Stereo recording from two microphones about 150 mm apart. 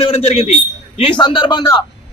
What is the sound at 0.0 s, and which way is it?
A man's voice, 40° left (ahead or behind).